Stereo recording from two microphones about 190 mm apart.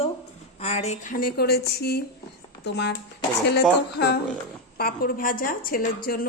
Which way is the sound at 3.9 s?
60° left (ahead or behind).